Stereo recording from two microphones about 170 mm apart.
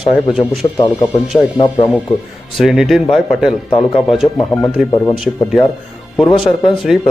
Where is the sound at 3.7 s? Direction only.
30° left (ahead or behind).